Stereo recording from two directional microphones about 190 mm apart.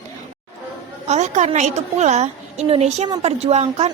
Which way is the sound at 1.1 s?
35° right (ahead or behind).